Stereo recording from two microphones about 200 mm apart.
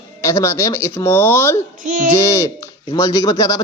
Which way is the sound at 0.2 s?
15° left (ahead or behind).